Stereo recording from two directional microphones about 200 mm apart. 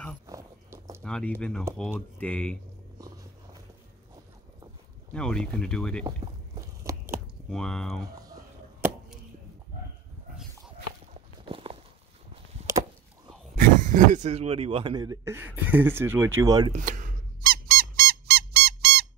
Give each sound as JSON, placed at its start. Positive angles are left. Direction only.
{"t": 0.3, "sound": "biting", "side_deg": -15}
{"t": 1.0, "sound": "speech", "side_deg": 5}
{"t": 5.1, "sound": "speech", "side_deg": 5}
{"t": 6.0, "sound": "a sound", "side_deg": -20}
{"t": 7.4, "sound": "speech", "side_deg": 5}
{"t": 11.4, "sound": "walk", "side_deg": -25}
{"t": 13.6, "sound": "speech", "side_deg": -40}
{"t": 16.7, "sound": "squeak", "side_deg": -40}